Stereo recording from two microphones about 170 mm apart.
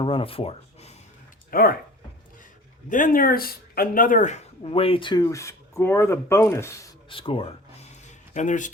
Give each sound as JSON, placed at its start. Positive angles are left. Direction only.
{"t": 0.0, "sound": "speech", "side_deg": 30}
{"t": 1.5, "sound": "speech", "side_deg": 60}
{"t": 2.9, "sound": "speech", "side_deg": 55}
{"t": 7.1, "sound": "a sound", "side_deg": 30}